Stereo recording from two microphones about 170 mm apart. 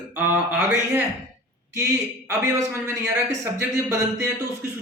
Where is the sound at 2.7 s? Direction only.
15° right (ahead or behind).